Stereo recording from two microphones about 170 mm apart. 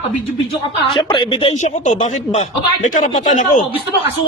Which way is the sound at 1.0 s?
25° left (ahead or behind).